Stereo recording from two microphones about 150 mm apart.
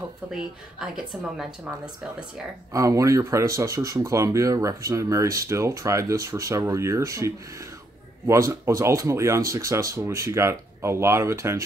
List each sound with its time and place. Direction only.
0.3 s a woman's voice: 5° right (ahead or behind)
2.7 s speech: 20° right (ahead or behind)